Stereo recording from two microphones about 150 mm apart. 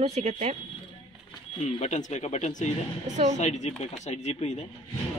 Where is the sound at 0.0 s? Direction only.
50° right (ahead or behind).